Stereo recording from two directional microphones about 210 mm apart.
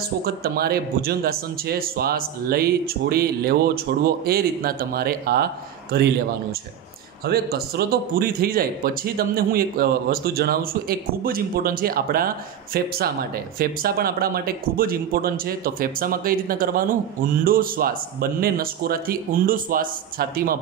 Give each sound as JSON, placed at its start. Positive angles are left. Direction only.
{"t": 0.2, "sound": "a man's voice", "side_deg": -45}
{"t": 7.2, "sound": "a man's voice", "side_deg": -50}